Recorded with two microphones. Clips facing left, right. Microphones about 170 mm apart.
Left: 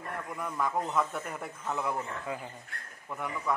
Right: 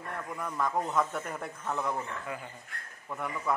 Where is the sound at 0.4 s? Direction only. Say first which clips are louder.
Right 1 dB; centre (ahead or behind).